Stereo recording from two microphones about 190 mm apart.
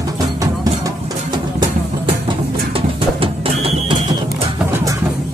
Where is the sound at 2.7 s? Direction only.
30° right (ahead or behind).